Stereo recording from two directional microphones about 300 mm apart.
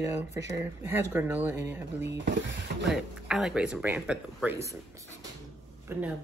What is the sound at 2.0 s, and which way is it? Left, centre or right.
Speech, right.